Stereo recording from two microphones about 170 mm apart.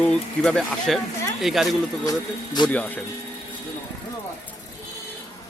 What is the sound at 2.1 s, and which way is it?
Speech, 25° left (ahead or behind).